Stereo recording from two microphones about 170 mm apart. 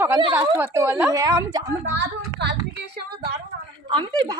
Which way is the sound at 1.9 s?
90° right.